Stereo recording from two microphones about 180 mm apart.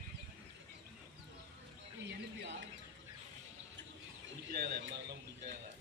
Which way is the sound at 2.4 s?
80° right.